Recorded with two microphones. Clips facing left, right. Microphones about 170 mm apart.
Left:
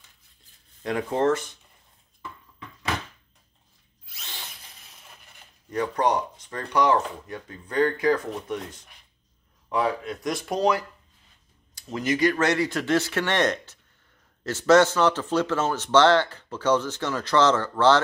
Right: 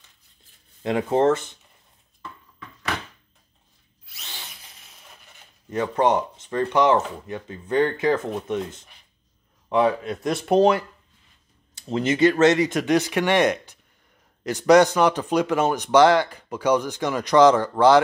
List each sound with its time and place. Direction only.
0.8 s speech: 25° right (ahead or behind)
5.7 s speech: 25° right (ahead or behind)
9.7 s speech: 25° right (ahead or behind)